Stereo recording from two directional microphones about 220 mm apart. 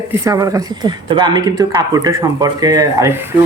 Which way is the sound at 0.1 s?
15° right (ahead or behind).